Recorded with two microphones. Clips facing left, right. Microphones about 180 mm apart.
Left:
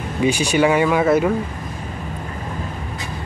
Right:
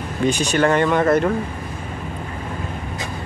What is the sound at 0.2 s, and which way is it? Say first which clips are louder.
Speech: left 1 dB; 10° left (ahead or behind).